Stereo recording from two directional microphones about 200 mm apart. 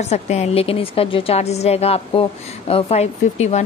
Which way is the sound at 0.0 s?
35° left (ahead or behind).